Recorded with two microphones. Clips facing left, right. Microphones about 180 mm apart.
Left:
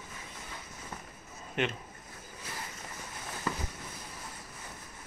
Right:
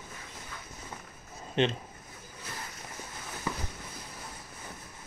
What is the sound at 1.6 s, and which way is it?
Speech, 25° right (ahead or behind).